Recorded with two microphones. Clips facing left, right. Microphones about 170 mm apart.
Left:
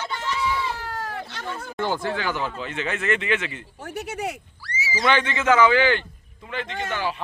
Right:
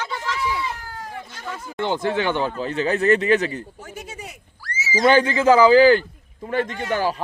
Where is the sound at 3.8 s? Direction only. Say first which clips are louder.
Left 6 dB; 70° left (ahead or behind).